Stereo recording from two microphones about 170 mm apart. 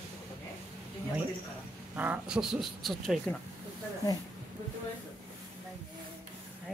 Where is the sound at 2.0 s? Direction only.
5° right (ahead or behind).